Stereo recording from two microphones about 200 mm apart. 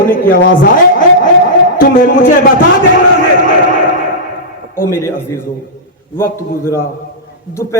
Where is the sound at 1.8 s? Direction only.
45° left (ahead or behind).